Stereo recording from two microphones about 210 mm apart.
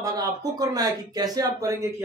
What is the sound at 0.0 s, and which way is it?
A man's voice, 15° right (ahead or behind).